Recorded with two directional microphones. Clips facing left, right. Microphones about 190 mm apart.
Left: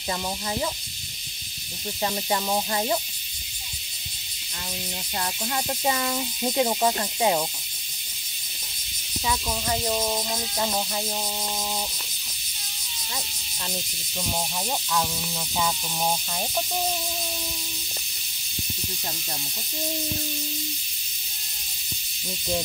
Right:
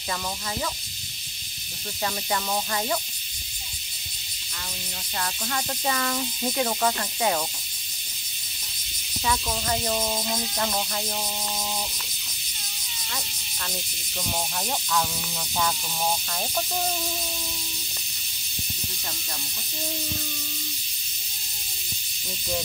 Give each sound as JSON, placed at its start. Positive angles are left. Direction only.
{"t": 2.0, "sound": "speech", "side_deg": 20}
{"t": 5.2, "sound": "speech", "side_deg": 20}
{"t": 9.2, "sound": "speech", "side_deg": 10}